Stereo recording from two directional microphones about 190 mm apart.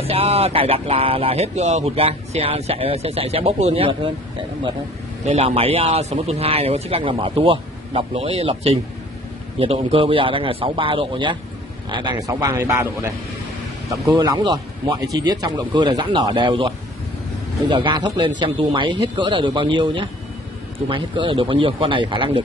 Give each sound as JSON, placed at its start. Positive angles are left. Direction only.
{"t": 0.0, "sound": "speech", "side_deg": -30}
{"t": 5.2, "sound": "a man's voice", "side_deg": -30}